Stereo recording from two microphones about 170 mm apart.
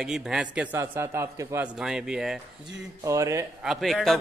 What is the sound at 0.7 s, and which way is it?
Speech, 15° right (ahead or behind).